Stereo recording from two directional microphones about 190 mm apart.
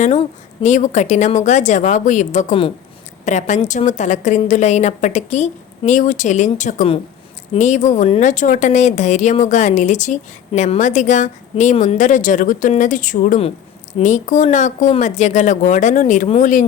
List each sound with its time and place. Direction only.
0.6 s speech: 40° left (ahead or behind)